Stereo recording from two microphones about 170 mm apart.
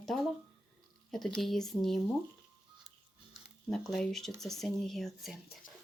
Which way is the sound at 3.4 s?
Centre (ahead or behind).